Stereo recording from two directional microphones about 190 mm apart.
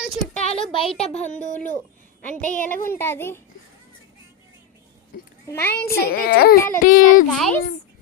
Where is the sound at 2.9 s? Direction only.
10° left (ahead or behind).